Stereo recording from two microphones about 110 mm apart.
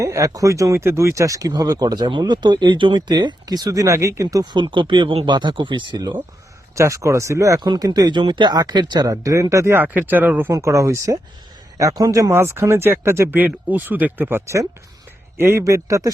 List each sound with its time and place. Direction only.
0.0 s speech: 30° right (ahead or behind)
4.5 s speech: 45° right (ahead or behind)
6.7 s speech: 30° right (ahead or behind)
10.5 s speech: 30° right (ahead or behind)